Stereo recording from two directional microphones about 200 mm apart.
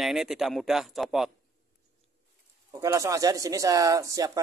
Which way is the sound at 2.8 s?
15° right (ahead or behind).